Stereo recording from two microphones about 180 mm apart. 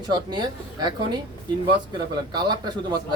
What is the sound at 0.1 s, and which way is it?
Speech, 25° right (ahead or behind).